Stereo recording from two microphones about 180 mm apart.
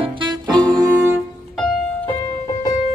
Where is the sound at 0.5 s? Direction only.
5° left (ahead or behind).